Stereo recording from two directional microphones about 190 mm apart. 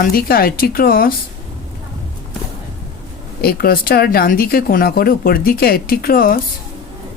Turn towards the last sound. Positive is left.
turn(degrees=50)  # may be behind; listen again after turning